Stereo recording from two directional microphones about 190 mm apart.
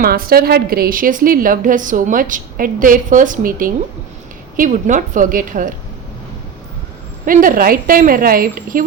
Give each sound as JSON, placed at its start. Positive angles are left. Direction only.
{"t": 0.0, "sound": "a woman's voice", "side_deg": -50}
{"t": 7.3, "sound": "a woman's voice", "side_deg": -45}